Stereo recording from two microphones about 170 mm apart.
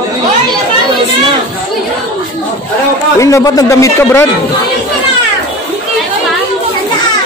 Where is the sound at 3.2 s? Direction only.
20° left (ahead or behind).